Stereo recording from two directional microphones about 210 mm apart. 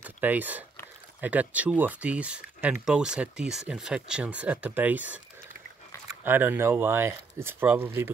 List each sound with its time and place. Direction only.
0.0 s speech: 10° right (ahead or behind)
6.2 s speech: 10° right (ahead or behind)